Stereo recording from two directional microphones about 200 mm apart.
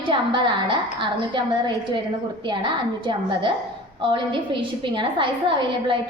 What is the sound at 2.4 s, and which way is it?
A woman's voice, 25° right (ahead or behind).